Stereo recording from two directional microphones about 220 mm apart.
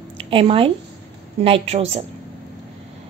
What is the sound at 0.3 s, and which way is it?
A woman's voice, 25° right (ahead or behind).